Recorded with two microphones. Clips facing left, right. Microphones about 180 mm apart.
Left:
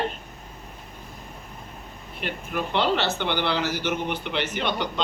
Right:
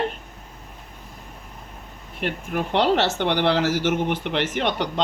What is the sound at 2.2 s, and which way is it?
A man's voice, 70° right (ahead or behind).